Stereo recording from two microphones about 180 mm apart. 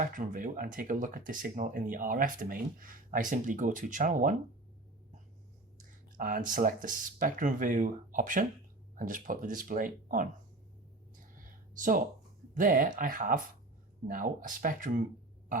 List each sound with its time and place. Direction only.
0.0 s speech: 50° right (ahead or behind)
5.7 s speech: 50° right (ahead or behind)
11.8 s speech: 50° right (ahead or behind)